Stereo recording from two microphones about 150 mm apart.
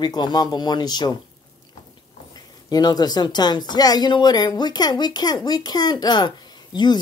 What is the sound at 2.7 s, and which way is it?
Speech, 25° left (ahead or behind).